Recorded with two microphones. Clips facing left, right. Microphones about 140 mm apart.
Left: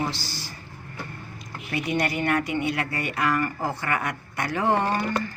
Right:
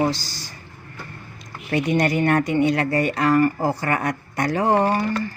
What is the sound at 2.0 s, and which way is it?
Speech, 40° right (ahead or behind).